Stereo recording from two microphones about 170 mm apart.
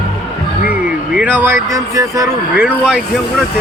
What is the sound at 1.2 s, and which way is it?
Speech, 10° right (ahead or behind).